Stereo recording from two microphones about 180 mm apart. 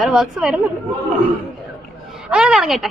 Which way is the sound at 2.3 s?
5° right (ahead or behind).